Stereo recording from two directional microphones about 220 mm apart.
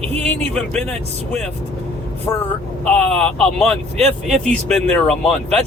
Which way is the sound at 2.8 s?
5° left (ahead or behind).